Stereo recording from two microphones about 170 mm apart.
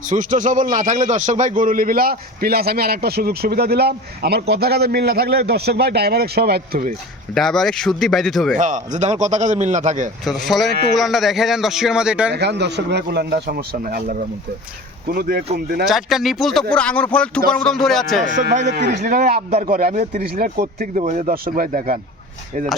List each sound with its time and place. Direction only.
0.1 s a man's voice: 50° right (ahead or behind)
7.3 s speech: centre (ahead or behind)
8.5 s a man's voice: 45° right (ahead or behind)
10.2 s speech: centre (ahead or behind)
12.3 s a man's voice: 80° right; by 15.4 s 60° right (ahead or behind)
15.9 s speech: centre (ahead or behind)
18.7 s a man's voice: 75° right (ahead or behind)
19.0 s speech: 65° right (ahead or behind); by 21.3 s 45° right (ahead or behind)
21.4 s a man's voice: 55° right (ahead or behind)